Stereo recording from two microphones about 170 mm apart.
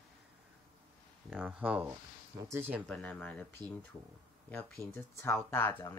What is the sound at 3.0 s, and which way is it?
Speech, 5° left (ahead or behind).